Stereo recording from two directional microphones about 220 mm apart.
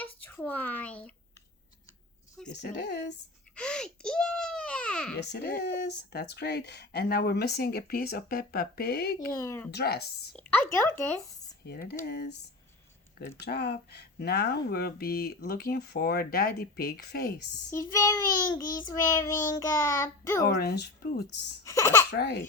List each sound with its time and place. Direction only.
0.2 s a sound: 10° left (ahead or behind)
2.5 s speech: 50° left (ahead or behind)
3.5 s a child's voice: 5° left (ahead or behind)
5.3 s speech: 45° left (ahead or behind)
9.3 s child singing: 15° left (ahead or behind)
9.7 s speech: 45° left (ahead or behind)
10.3 s child singing: 5° left (ahead or behind)
11.6 s speech: 45° left (ahead or behind)
13.4 s speech: 50° left (ahead or behind)
17.7 s child singing: 15° left (ahead or behind)
20.6 s speech: 45° left (ahead or behind)
21.6 s child singing: 15° left (ahead or behind)
22.1 s speech: 50° left (ahead or behind)